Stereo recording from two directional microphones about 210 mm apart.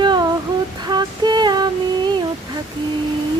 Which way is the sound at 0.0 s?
20° right (ahead or behind).